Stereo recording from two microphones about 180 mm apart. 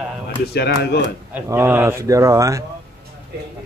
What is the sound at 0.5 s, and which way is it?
Speech, 65° left (ahead or behind).